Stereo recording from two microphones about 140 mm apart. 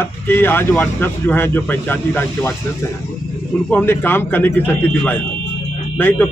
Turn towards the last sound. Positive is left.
turn(degrees=15)  # may be behind; listen again after turning